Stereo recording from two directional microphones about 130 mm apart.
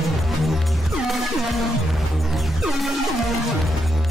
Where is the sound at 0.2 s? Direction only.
Centre (ahead or behind).